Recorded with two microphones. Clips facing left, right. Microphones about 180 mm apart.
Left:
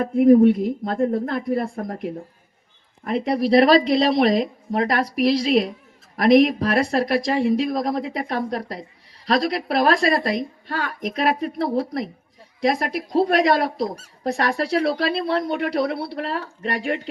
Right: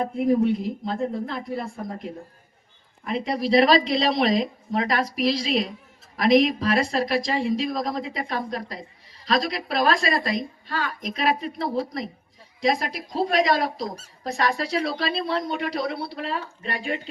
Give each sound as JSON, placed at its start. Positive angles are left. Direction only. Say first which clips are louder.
{"t": 0.0, "sound": "a woman's voice", "louder": "left 8 dB", "side_deg": 55}